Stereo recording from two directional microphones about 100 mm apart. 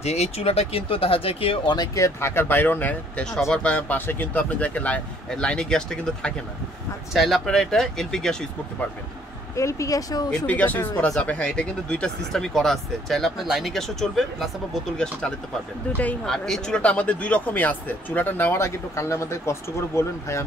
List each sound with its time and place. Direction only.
0.0 s speech: 90° left; by 1.6 s 70° left (ahead or behind)
2.0 s speech: 30° left (ahead or behind); by 8.5 s 5° left (ahead or behind)
9.6 s speech: 30° left (ahead or behind)
10.4 s speech: 15° left (ahead or behind)
16.3 s speech: 5° left (ahead or behind); by 20.4 s 30° left (ahead or behind)